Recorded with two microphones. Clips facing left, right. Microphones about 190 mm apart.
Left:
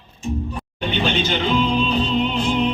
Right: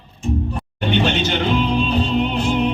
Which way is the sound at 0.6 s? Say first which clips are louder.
Right 4 dB; 65° right (ahead or behind).